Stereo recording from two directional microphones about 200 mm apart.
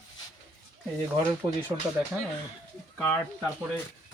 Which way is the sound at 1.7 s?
15° right (ahead or behind).